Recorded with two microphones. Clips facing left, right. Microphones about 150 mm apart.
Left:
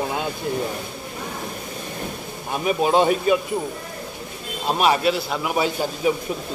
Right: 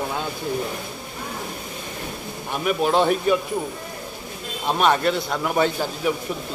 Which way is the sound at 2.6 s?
20° left (ahead or behind).